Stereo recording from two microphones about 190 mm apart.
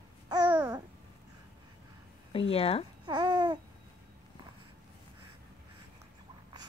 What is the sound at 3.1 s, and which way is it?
Babbling, 20° right (ahead or behind).